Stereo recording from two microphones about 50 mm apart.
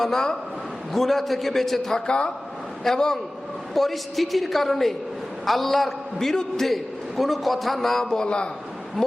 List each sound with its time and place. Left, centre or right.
0.0 s a man's voice: centre
2.0 s speech: left
2.8 s a man's voice: centre
9.0 s a man's voice: centre